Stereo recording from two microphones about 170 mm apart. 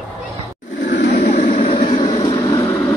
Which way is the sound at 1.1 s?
50° left (ahead or behind).